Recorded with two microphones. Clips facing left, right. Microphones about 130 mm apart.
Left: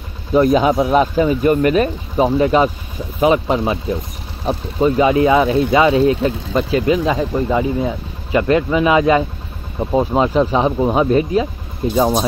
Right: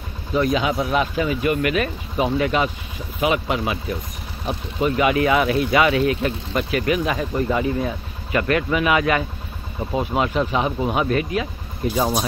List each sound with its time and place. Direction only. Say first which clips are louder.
0.3 s speech: left 7 dB; 40° left (ahead or behind); by 12.0 s 25° left (ahead or behind)